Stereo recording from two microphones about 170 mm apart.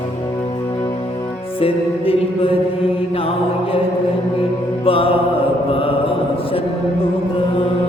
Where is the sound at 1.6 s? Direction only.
35° left (ahead or behind).